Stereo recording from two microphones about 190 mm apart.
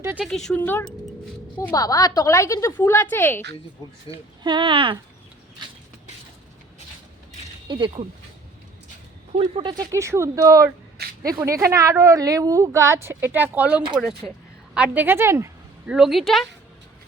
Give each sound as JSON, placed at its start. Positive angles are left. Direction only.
{"t": 0.0, "sound": "speech", "side_deg": -10}
{"t": 0.3, "sound": "a woman's voice", "side_deg": 0}
{"t": 4.1, "sound": "speech", "side_deg": 30}
{"t": 4.4, "sound": "speech", "side_deg": -25}
{"t": 7.7, "sound": "speech", "side_deg": -25}
{"t": 9.3, "sound": "speech", "side_deg": -30}
{"t": 9.9, "sound": "a woman's voice", "side_deg": -15}
{"t": 10.9, "sound": "a sound", "side_deg": -55}
{"t": 11.3, "sound": "a woman's voice", "side_deg": -15}
{"t": 15.9, "sound": "a woman's voice", "side_deg": 0}